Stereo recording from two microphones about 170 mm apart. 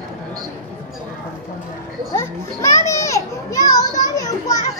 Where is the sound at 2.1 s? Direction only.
15° left (ahead or behind).